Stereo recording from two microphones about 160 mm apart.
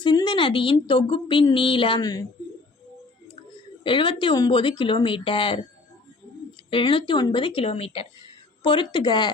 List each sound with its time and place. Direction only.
0.0 s speech: 30° left (ahead or behind)
3.8 s speech: 30° left (ahead or behind)
6.7 s a woman's voice: 35° left (ahead or behind)